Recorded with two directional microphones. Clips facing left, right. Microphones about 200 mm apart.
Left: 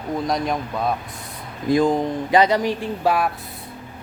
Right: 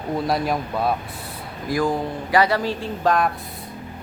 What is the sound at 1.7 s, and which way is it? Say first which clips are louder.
Speech: left 4 dB; 20° left (ahead or behind).